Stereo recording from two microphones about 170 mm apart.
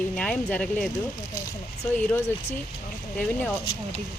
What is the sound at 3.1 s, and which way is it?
Speech, 10° left (ahead or behind).